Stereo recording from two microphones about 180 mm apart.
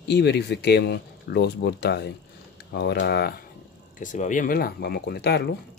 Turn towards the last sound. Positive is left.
turn(degrees=65)  # may be behind; listen again after turning